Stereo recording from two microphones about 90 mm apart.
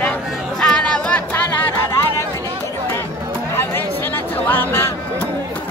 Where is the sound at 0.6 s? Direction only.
10° left (ahead or behind).